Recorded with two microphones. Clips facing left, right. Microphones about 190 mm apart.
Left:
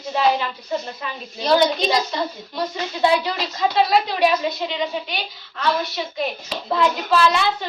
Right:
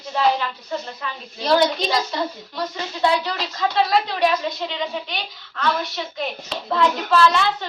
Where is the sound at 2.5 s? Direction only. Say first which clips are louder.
Left 2 dB; 10° left (ahead or behind).